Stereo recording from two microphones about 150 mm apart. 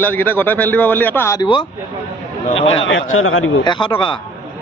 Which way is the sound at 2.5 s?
40° left (ahead or behind).